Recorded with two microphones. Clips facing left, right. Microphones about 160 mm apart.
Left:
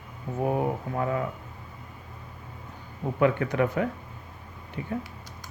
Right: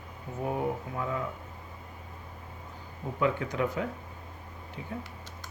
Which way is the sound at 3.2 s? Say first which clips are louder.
Left 5 dB; 60° left (ahead or behind).